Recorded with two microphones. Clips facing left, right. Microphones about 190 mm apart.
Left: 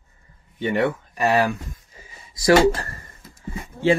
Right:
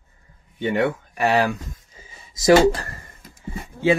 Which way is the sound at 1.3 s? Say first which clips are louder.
Even; 15° right (ahead or behind).